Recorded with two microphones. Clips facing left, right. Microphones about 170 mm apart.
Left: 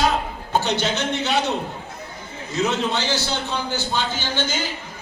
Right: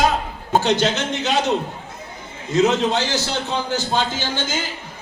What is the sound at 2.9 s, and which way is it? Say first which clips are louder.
A man's voice: right 2 dB; 45° right (ahead or behind).